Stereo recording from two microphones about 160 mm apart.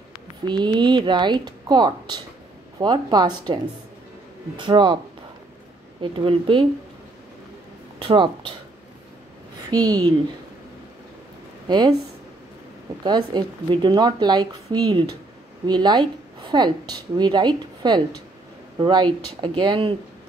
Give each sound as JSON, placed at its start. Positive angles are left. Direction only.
{"t": 0.5, "sound": "a woman's voice", "side_deg": -30}
{"t": 4.6, "sound": "a woman's voice", "side_deg": -30}
{"t": 5.9, "sound": "speech", "side_deg": -35}
{"t": 8.0, "sound": "speech", "side_deg": -35}
{"t": 9.7, "sound": "a woman's voice", "side_deg": -25}
{"t": 11.6, "sound": "speech", "side_deg": -25}
{"t": 13.0, "sound": "a woman's voice", "side_deg": -25}